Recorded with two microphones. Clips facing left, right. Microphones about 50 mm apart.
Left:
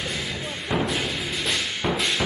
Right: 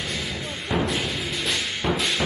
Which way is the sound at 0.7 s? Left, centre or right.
Centre.